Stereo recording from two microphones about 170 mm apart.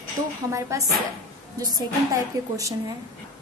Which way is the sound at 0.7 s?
15° right (ahead or behind).